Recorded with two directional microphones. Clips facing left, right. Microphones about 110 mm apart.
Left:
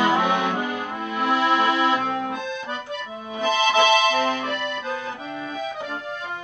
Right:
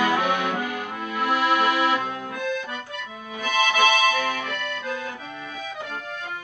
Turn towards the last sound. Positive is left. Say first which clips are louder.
# left 3 dB
turn(degrees=30)  # may be behind; listen again after turning